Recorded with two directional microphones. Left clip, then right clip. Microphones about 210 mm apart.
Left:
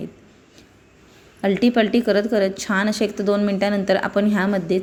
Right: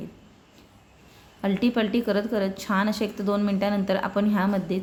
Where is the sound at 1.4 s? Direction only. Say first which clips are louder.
Left 7 dB; 15° left (ahead or behind).